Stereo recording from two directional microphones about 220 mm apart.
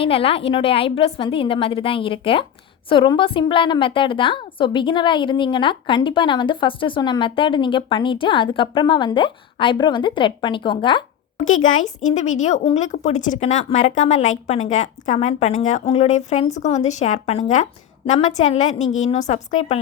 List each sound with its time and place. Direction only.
0.0 s a woman's voice: 25° left (ahead or behind)
11.7 s a woman's voice: 35° left (ahead or behind)